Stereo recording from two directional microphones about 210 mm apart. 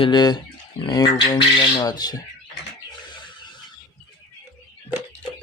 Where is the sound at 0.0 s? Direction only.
20° left (ahead or behind).